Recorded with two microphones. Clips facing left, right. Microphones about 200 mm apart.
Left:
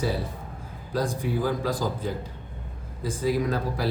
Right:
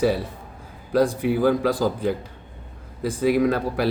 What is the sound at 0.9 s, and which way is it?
Speech, 65° right (ahead or behind).